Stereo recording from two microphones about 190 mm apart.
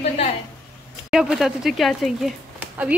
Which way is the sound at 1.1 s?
Centre (ahead or behind).